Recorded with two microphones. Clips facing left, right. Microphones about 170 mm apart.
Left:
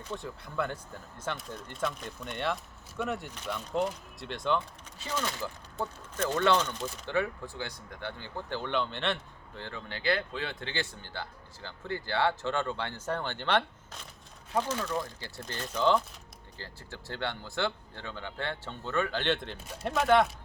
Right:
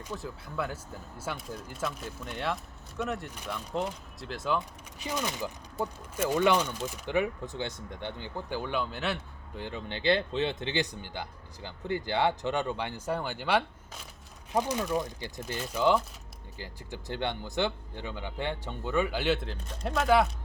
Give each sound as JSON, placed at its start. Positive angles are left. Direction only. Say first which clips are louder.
{"t": 0.0, "sound": "speech", "louder": "even", "side_deg": -5}
{"t": 3.3, "sound": "speech", "louder": "left 2 dB", "side_deg": -10}
{"t": 4.9, "sound": "speech", "louder": "right 1 dB", "side_deg": -15}
{"t": 9.6, "sound": "speech", "louder": "right 4 dB", "side_deg": -15}